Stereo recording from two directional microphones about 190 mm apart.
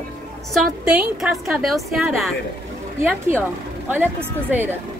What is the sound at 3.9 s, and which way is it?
Speech, 10° right (ahead or behind).